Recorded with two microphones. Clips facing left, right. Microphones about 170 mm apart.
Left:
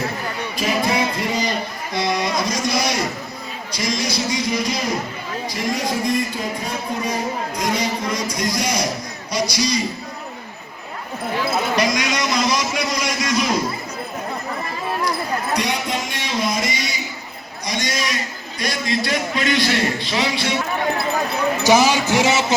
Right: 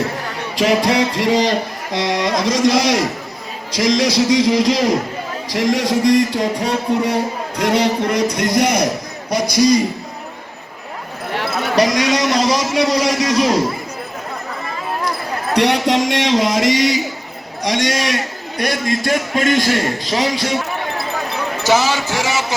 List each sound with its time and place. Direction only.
0.5 s music: 90° right
5.5 s a man's voice: 90° right; by 9.8 s 50° right (ahead or behind)
11.9 s speech: 35° right (ahead or behind)
15.5 s music: 70° right (ahead or behind); by 17.0 s 90° right
17.6 s a man's voice: 85° right; by 20.6 s 40° right (ahead or behind)
21.6 s speech: 15° left (ahead or behind)